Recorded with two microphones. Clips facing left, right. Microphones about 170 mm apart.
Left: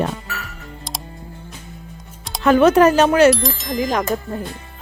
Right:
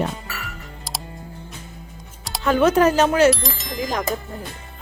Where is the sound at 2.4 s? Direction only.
70° left (ahead or behind).